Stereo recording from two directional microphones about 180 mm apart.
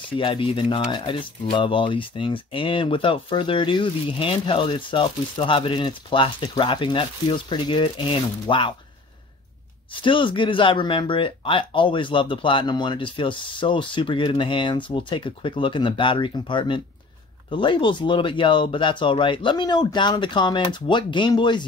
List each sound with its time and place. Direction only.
0.2 s speech: 30° left (ahead or behind)
9.9 s speech: 30° left (ahead or behind)